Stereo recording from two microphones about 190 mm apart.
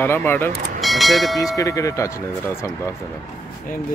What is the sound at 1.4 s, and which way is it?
Speech, 20° left (ahead or behind).